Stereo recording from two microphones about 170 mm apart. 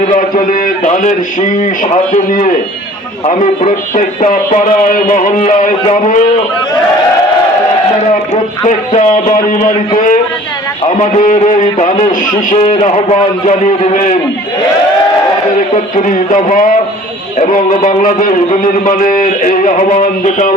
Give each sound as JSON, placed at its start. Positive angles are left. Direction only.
{"t": 0.1, "sound": "a man's voice", "side_deg": 50}
{"t": 8.6, "sound": "a sound", "side_deg": 40}
{"t": 9.5, "sound": "a man's voice", "side_deg": 50}
{"t": 10.8, "sound": "a man's voice", "side_deg": 45}
{"t": 15.7, "sound": "a man's voice", "side_deg": 45}